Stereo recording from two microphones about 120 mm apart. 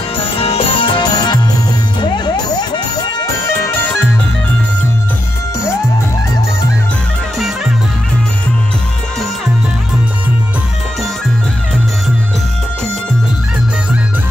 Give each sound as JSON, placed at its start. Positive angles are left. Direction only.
{"t": 0.2, "sound": "music", "side_deg": 50}
{"t": 3.4, "sound": "music", "side_deg": 20}